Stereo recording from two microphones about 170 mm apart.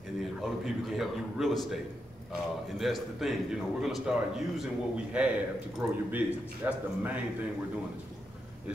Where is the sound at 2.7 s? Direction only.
Centre (ahead or behind).